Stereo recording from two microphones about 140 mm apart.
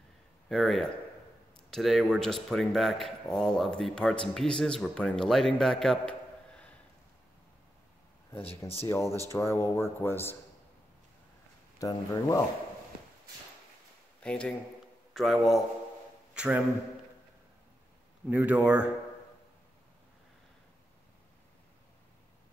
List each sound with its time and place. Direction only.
0.5 s speech: centre (ahead or behind)
8.8 s speech: 20° left (ahead or behind)
11.8 s speech: 25° left (ahead or behind)
14.2 s a man's voice: 5° left (ahead or behind); by 16.6 s 10° right (ahead or behind)
18.3 s speech: 10° right (ahead or behind)